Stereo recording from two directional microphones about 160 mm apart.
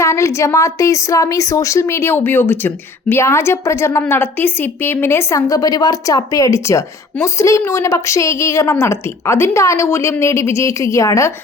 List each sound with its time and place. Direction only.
0.0 s a woman's voice: 20° left (ahead or behind)